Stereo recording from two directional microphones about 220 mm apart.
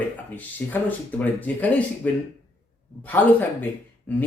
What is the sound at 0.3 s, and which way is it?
Speech, 5° left (ahead or behind).